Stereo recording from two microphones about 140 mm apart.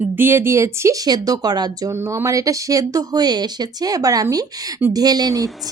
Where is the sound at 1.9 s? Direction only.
15° right (ahead or behind).